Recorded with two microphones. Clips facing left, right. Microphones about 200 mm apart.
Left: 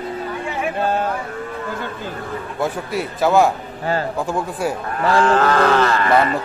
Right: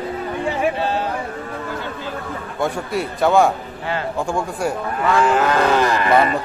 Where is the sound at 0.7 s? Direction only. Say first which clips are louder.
Left 2 dB; 50° left (ahead or behind).